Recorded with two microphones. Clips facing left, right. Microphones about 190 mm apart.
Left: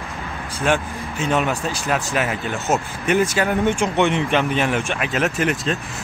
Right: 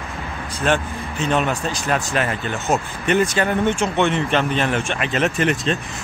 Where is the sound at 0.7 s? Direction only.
10° left (ahead or behind).